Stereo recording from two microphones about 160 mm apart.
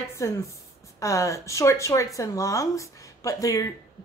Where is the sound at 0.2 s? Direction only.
20° left (ahead or behind).